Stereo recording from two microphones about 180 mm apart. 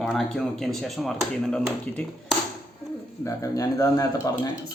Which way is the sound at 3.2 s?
20° left (ahead or behind).